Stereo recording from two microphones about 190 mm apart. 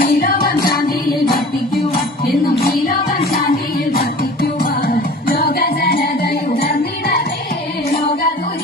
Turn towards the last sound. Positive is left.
turn(degrees=55)  # may be behind; listen again after turning